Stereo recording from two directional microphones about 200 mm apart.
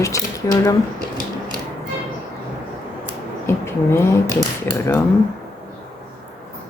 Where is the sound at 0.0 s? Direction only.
15° left (ahead or behind).